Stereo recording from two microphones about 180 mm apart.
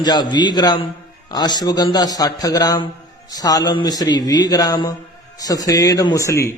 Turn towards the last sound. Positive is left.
turn(degrees=15)  # may be behind; listen again after turning